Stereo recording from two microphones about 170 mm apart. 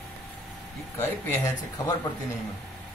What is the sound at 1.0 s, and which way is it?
Speech, 20° left (ahead or behind).